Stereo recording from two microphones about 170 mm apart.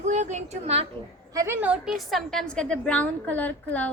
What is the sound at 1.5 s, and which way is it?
A woman's voice, 5° right (ahead or behind).